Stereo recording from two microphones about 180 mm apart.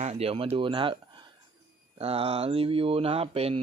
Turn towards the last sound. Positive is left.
turn(degrees=-30)  # may be behind; listen again after turning